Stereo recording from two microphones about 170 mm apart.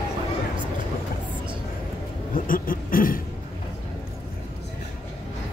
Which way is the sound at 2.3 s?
55° left (ahead or behind).